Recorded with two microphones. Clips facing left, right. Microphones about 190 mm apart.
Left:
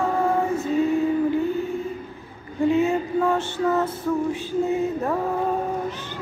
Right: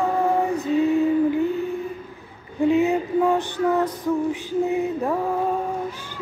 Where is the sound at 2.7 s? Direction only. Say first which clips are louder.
Right 2 dB; 15° right (ahead or behind).